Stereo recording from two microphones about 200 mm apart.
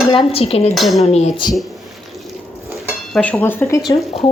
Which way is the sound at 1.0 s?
30° left (ahead or behind).